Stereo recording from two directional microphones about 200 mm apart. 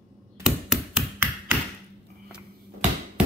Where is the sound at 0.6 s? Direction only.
5° right (ahead or behind).